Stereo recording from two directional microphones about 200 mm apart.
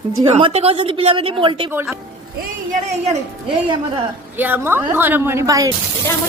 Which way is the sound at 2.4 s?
35° right (ahead or behind).